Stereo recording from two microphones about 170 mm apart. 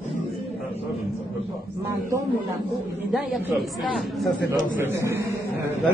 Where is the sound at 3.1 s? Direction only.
Centre (ahead or behind).